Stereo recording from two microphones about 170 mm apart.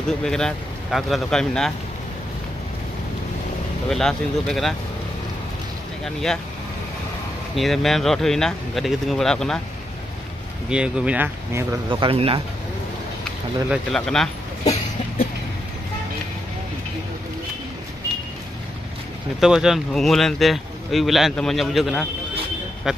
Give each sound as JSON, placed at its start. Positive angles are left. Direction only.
{"t": 0.2, "sound": "speech", "side_deg": 5}
{"t": 3.9, "sound": "speech", "side_deg": 0}
{"t": 6.0, "sound": "speech", "side_deg": 5}
{"t": 7.5, "sound": "speech", "side_deg": 0}
{"t": 10.7, "sound": "speech", "side_deg": -5}
{"t": 11.9, "sound": "speech", "side_deg": -30}
{"t": 13.2, "sound": "speech", "side_deg": 5}
{"t": 19.4, "sound": "speech", "side_deg": 0}